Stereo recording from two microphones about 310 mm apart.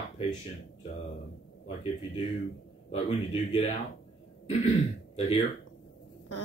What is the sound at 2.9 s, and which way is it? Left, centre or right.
Speech, left.